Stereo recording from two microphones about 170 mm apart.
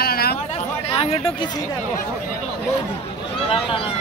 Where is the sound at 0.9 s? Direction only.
35° left (ahead or behind).